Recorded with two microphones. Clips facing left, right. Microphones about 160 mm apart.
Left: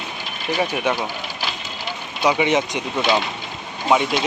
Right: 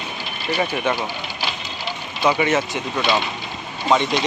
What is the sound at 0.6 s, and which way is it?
Speech, 10° left (ahead or behind).